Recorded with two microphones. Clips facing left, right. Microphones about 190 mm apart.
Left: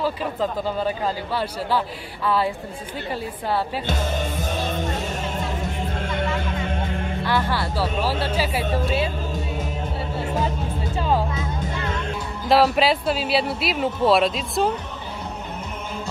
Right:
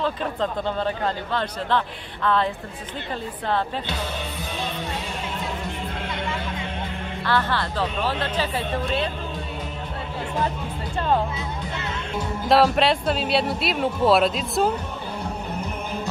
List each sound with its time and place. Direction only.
0.0 s speech: 5° left (ahead or behind)
3.8 s music: 45° left (ahead or behind)
7.2 s speech: 10° left (ahead or behind)
11.0 s speech: 5° left (ahead or behind)
12.4 s speech: centre (ahead or behind)